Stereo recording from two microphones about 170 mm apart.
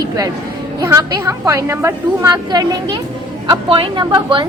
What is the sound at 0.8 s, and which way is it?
A woman's voice, 20° right (ahead or behind).